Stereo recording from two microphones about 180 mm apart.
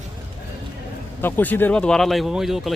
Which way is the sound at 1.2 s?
10° left (ahead or behind).